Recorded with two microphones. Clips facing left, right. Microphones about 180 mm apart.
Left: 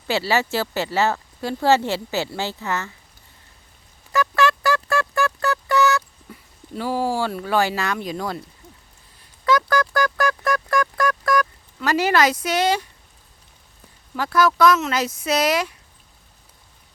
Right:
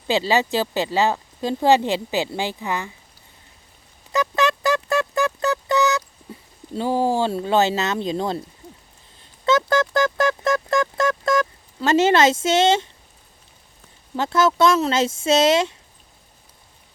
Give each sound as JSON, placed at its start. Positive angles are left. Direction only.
{"t": 0.1, "sound": "speech", "side_deg": -15}
{"t": 4.1, "sound": "music", "side_deg": -20}
{"t": 9.4, "sound": "music", "side_deg": -25}
{"t": 14.2, "sound": "speech", "side_deg": -25}